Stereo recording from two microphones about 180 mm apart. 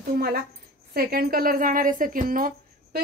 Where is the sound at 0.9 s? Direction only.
55° right (ahead or behind).